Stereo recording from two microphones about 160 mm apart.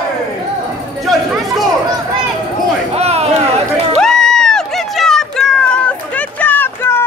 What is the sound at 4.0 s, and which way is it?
Run, 5° left (ahead or behind).